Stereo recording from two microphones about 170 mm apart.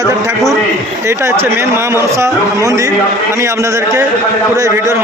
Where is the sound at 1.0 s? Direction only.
15° right (ahead or behind).